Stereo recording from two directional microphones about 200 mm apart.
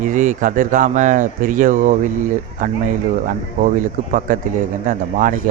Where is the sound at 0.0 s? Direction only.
40° right (ahead or behind).